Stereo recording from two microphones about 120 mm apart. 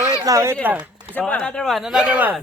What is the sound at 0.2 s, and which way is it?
Speech, 25° right (ahead or behind).